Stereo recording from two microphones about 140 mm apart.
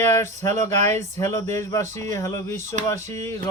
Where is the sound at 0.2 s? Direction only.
20° left (ahead or behind).